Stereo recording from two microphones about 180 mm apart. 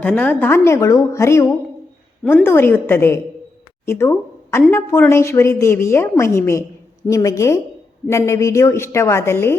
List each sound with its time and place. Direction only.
0.0 s a woman's voice: 10° left (ahead or behind)